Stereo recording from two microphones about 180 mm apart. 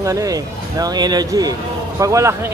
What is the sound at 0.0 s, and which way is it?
Speech, 20° right (ahead or behind).